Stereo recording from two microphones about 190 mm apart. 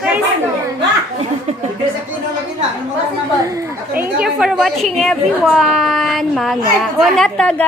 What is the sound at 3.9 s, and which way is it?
A woman's voice, 5° right (ahead or behind).